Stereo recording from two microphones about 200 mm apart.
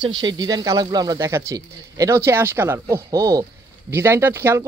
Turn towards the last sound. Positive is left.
turn(degrees=-15)  # may be behind; listen again after turning